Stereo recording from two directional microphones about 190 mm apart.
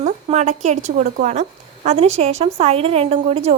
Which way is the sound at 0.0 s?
35° right (ahead or behind).